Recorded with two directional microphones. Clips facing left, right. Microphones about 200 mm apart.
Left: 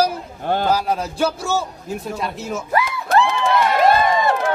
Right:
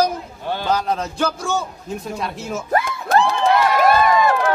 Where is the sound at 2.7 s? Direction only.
50° right (ahead or behind).